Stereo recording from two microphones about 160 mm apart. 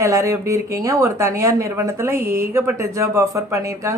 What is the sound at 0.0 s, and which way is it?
Speech, 20° right (ahead or behind).